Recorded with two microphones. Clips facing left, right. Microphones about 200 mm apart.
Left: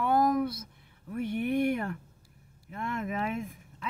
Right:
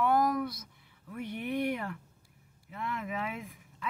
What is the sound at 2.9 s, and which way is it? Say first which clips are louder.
Speech: left 4 dB; 45° left (ahead or behind).